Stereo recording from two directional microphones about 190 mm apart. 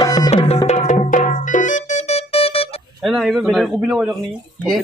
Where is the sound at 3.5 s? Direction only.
Centre (ahead or behind).